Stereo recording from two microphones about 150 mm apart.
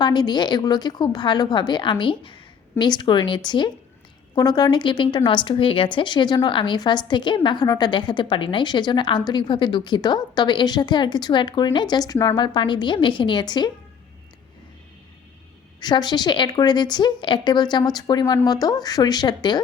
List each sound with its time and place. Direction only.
0.0 s a woman's voice: 30° left (ahead or behind)
15.8 s a woman's voice: 30° left (ahead or behind)